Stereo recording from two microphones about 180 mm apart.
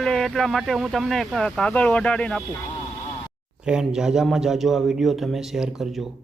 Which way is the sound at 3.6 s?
5° right (ahead or behind).